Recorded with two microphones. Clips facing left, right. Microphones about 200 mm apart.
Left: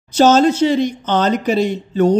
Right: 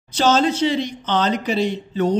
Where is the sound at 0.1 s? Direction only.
45° left (ahead or behind).